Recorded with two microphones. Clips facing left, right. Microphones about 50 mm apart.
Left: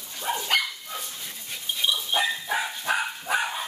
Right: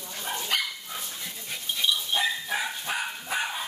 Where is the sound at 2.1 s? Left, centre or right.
Left.